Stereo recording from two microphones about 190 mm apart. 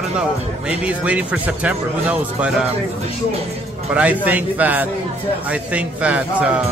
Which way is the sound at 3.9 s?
5° right (ahead or behind).